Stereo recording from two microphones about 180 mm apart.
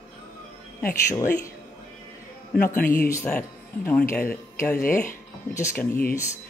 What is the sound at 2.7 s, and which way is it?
Speech, 50° left (ahead or behind).